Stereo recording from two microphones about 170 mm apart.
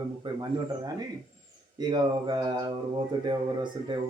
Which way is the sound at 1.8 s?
25° right (ahead or behind).